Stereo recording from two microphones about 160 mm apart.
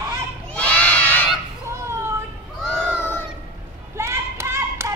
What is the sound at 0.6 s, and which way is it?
Crowd, 10° left (ahead or behind).